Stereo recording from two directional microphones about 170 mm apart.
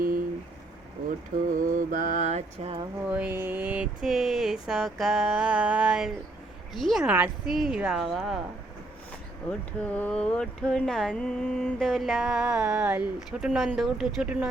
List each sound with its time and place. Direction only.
1.5 s mantra: 50° right (ahead or behind)
3.1 s speech: 10° right (ahead or behind)
9.5 s speech: 5° left (ahead or behind)